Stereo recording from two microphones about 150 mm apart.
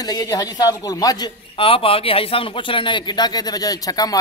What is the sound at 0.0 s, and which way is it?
A man's voice, 25° left (ahead or behind).